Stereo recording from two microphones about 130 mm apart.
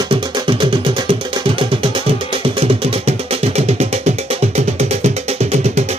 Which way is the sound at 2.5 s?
50° right (ahead or behind).